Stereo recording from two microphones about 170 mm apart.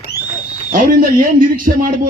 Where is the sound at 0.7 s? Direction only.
55° right (ahead or behind).